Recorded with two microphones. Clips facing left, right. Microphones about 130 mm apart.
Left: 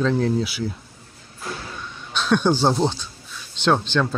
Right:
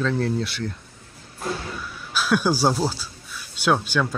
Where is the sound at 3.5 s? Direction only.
10° right (ahead or behind).